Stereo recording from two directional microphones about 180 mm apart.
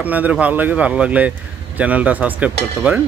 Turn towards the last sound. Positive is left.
turn(degrees=-5)  # may be behind; listen again after turning